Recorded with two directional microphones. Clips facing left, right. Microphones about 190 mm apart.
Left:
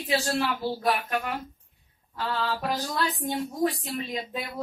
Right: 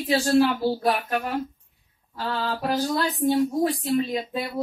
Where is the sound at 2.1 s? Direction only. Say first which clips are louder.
Right 1 dB; 45° right (ahead or behind).